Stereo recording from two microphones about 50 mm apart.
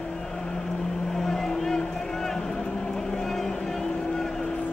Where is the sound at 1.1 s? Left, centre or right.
Centre.